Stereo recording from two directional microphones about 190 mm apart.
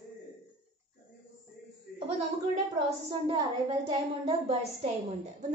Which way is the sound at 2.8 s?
25° right (ahead or behind).